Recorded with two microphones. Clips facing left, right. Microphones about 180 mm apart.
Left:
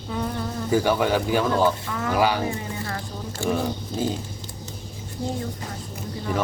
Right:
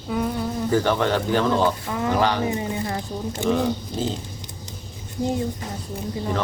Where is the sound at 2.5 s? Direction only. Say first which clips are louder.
Right 5 dB; 20° right (ahead or behind).